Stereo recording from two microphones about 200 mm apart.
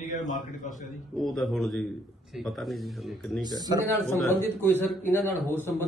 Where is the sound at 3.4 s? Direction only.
20° right (ahead or behind).